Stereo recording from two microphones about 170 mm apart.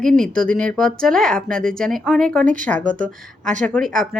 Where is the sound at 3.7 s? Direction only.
5° left (ahead or behind).